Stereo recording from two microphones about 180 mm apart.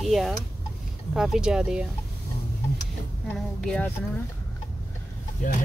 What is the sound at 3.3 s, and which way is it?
Speech, 5° left (ahead or behind).